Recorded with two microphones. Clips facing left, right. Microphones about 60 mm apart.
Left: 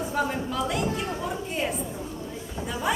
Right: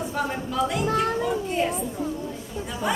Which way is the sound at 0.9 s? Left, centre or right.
Right.